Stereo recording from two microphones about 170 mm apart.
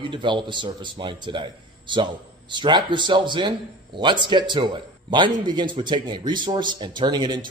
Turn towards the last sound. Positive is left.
turn(degrees=-25)  # may be behind; listen again after turning